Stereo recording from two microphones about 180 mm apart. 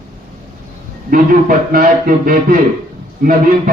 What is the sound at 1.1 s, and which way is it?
A man's voice, 50° right (ahead or behind).